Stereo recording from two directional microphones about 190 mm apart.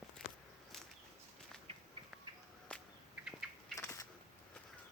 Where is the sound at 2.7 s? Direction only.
5° left (ahead or behind).